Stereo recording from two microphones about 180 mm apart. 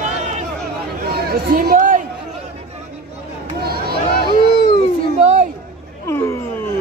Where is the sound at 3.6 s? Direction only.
60° right (ahead or behind).